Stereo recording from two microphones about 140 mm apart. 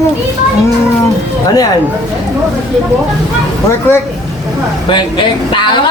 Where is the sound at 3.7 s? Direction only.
15° left (ahead or behind).